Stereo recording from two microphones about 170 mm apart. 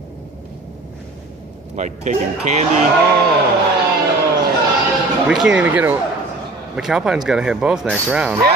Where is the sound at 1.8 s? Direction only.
45° right (ahead or behind).